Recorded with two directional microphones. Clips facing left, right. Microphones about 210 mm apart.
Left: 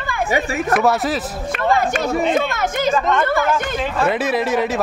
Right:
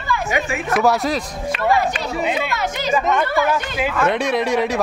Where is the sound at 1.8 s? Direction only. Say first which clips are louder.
Left 3 dB; 50° left (ahead or behind).